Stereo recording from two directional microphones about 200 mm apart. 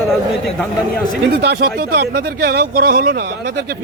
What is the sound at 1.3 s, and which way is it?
A man's voice, 55° right (ahead or behind).